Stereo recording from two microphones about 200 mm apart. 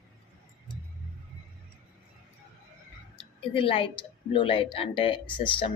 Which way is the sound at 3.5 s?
25° left (ahead or behind).